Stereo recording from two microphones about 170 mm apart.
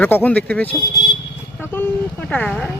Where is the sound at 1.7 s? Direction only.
10° left (ahead or behind).